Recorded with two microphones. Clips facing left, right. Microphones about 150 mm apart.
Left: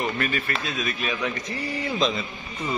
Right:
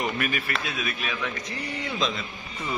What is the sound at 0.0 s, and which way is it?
Speech, 15° right (ahead or behind).